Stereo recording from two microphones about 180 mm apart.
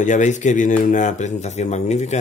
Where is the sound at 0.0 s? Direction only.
45° left (ahead or behind).